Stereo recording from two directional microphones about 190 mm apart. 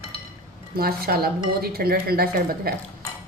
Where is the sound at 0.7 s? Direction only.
55° right (ahead or behind).